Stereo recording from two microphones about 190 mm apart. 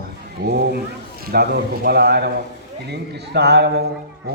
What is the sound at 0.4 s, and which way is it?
A man's voice, 55° right (ahead or behind).